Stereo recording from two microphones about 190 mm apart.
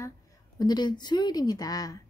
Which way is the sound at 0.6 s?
20° left (ahead or behind).